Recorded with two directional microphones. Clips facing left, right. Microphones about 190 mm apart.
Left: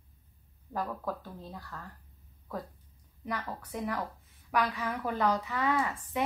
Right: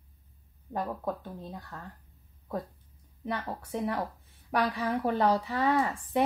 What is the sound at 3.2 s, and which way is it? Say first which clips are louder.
A woman's voice: right 3 dB; 25° right (ahead or behind).